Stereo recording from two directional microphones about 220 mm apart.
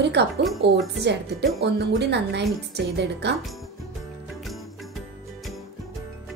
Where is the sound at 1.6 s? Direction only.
50° right (ahead or behind).